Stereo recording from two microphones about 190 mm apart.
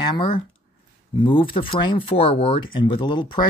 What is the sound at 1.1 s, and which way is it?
Speech, 25° left (ahead or behind).